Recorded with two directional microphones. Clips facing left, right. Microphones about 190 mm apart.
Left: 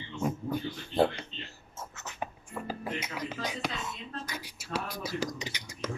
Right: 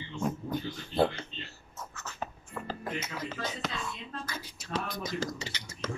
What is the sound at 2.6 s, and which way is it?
Whispering, 10° left (ahead or behind).